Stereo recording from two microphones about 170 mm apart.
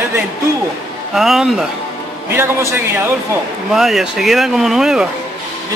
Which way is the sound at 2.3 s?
15° right (ahead or behind).